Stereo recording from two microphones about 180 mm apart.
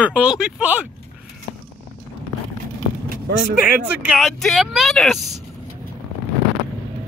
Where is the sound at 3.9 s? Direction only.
5° right (ahead or behind).